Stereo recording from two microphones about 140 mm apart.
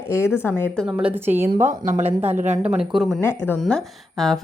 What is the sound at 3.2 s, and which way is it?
Speech, 15° left (ahead or behind).